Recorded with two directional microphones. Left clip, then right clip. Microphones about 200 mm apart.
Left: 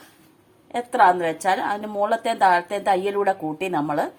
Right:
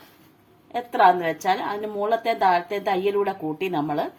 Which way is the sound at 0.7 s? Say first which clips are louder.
Left 1 dB; 25° left (ahead or behind).